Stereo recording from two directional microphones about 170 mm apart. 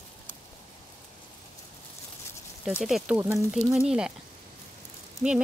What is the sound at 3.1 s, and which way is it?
Speech, 15° right (ahead or behind).